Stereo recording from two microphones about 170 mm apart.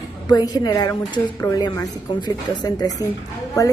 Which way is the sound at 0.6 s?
25° left (ahead or behind).